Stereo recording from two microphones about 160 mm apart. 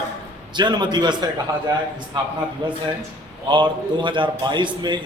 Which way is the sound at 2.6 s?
30° right (ahead or behind).